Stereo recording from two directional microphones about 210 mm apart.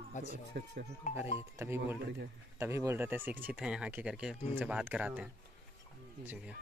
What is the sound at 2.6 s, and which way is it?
Speech, 15° right (ahead or behind).